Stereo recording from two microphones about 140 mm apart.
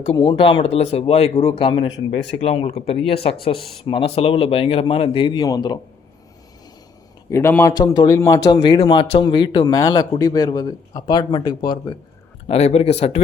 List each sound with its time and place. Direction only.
0.2 s a man's voice: 35° left (ahead or behind)
7.3 s speech: 20° left (ahead or behind)
7.7 s speech: 30° left (ahead or behind)
12.5 s speech: 50° left (ahead or behind)